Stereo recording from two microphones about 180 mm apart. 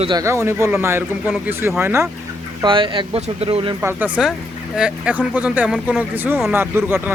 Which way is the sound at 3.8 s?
5° right (ahead or behind).